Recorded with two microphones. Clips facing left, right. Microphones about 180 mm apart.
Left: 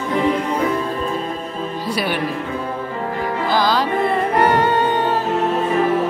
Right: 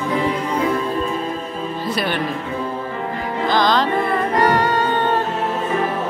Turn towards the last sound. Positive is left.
turn(degrees=20)  # may be behind; listen again after turning